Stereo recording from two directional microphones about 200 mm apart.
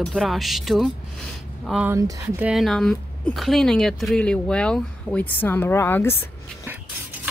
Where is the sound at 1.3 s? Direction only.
Centre (ahead or behind).